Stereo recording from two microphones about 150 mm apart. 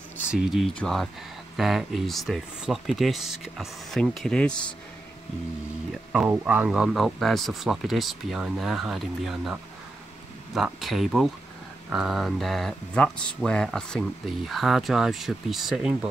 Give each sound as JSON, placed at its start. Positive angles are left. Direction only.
{"t": 0.3, "sound": "speech", "side_deg": -5}
{"t": 6.2, "sound": "speech", "side_deg": -10}